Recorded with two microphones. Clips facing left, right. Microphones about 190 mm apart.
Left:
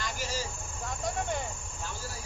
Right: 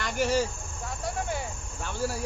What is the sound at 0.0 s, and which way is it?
Vehicle, 65° right (ahead or behind).